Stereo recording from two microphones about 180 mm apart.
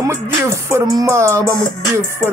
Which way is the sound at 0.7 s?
15° right (ahead or behind).